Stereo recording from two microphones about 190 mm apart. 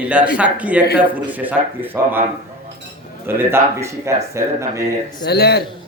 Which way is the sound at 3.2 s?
10° right (ahead or behind).